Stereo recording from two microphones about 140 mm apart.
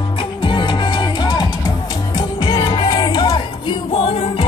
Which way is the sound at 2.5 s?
30° left (ahead or behind).